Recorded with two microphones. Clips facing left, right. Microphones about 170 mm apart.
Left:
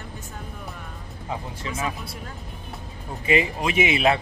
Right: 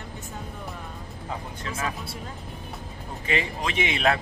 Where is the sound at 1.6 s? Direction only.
5° left (ahead or behind).